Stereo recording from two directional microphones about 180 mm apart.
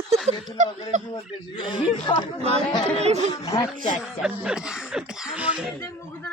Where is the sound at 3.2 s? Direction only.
20° left (ahead or behind).